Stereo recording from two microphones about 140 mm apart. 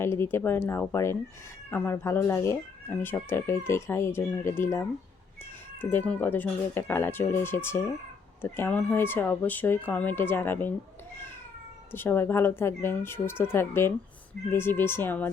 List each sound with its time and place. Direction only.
0.0 s speech: 15° left (ahead or behind)
11.9 s speech: 15° left (ahead or behind)